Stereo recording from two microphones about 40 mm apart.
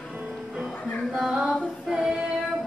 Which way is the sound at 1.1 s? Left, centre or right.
Centre.